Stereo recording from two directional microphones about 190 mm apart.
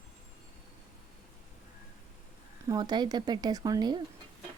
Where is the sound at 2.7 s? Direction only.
20° right (ahead or behind).